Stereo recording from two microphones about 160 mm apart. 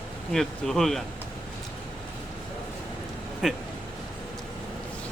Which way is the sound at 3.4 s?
Centre (ahead or behind).